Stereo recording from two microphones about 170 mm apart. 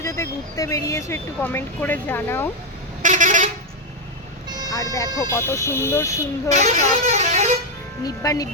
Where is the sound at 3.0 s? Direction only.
50° right (ahead or behind).